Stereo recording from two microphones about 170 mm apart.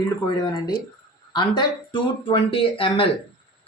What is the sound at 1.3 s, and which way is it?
A woman's voice, 25° left (ahead or behind).